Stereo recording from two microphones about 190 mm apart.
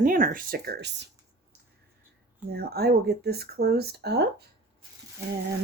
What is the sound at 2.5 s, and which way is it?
Speech, 55° right (ahead or behind).